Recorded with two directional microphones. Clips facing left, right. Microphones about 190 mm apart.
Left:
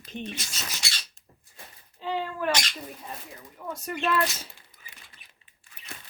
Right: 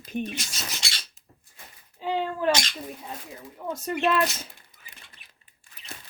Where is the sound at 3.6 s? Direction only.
20° right (ahead or behind).